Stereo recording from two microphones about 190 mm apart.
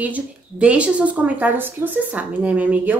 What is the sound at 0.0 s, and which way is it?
Speech, 10° right (ahead or behind).